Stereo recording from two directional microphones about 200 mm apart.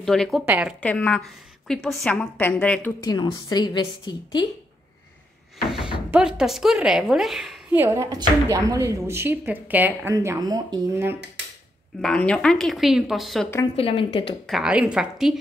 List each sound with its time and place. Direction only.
0.0 s a woman's voice: centre (ahead or behind)
0.7 s a woman's voice: 5° left (ahead or behind)
3.0 s a woman's voice: 20° left (ahead or behind)
6.1 s a woman's voice: 5° right (ahead or behind)
7.8 s speech: 15° right (ahead or behind)
12.0 s a woman's voice: 5° left (ahead or behind)
13.7 s a woman's voice: 25° left (ahead or behind)
14.4 s a woman's voice: centre (ahead or behind)